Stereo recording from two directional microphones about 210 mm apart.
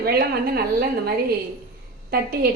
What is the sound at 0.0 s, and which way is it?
A woman's voice, 45° right (ahead or behind).